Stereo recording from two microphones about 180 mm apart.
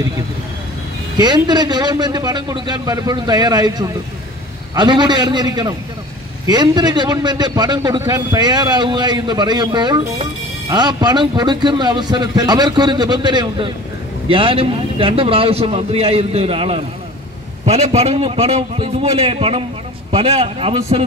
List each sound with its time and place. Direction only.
1.1 s a man's voice: 25° right (ahead or behind)